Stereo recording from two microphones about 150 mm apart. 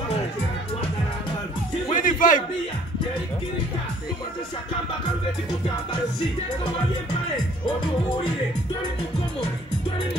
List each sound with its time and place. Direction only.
1.9 s music: 60° left (ahead or behind)